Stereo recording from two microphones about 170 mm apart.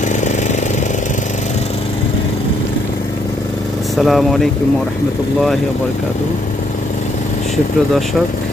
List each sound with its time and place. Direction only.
0.1 s jackhammer: 45° left (ahead or behind)
3.9 s speech: centre (ahead or behind)